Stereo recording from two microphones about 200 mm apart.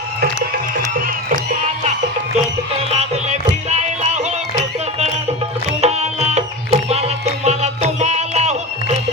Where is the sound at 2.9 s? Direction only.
35° right (ahead or behind).